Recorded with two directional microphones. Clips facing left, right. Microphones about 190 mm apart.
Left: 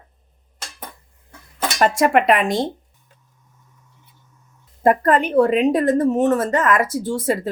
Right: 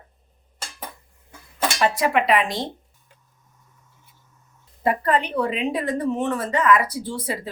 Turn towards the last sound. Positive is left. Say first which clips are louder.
# left 7 dB
turn(degrees=45)  # may be behind; listen again after turning